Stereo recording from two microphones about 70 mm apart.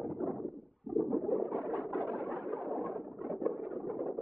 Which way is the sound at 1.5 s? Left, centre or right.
Right.